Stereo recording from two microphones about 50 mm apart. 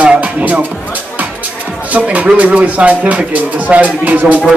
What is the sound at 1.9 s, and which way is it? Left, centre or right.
Speech, right.